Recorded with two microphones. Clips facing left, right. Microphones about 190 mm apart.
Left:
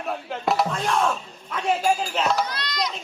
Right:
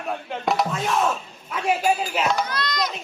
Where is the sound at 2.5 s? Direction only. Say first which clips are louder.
Right 3 dB; 45° right (ahead or behind).